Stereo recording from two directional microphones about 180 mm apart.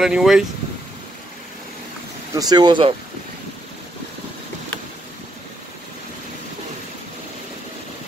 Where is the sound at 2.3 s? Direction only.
20° right (ahead or behind).